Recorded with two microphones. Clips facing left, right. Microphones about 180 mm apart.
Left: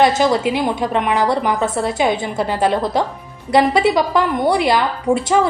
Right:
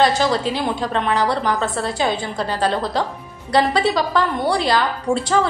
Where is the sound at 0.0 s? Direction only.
20° left (ahead or behind).